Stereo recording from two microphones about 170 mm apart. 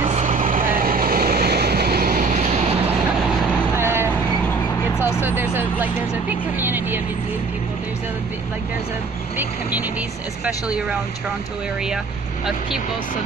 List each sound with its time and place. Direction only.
0.0 s vehicle: 45° right (ahead or behind)
3.7 s vehicle: 15° right (ahead or behind)
5.2 s music: 10° right (ahead or behind)
5.6 s vehicle: 10° right (ahead or behind)
9.4 s speech: 10° right (ahead or behind)